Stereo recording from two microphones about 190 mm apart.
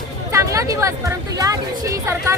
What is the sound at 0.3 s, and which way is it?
Speech, 15° right (ahead or behind).